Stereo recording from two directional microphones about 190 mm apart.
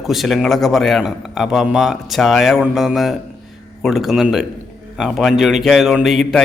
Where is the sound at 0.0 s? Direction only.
Centre (ahead or behind).